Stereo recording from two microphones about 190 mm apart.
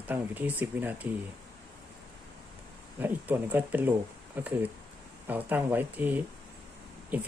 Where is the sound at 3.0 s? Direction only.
10° right (ahead or behind).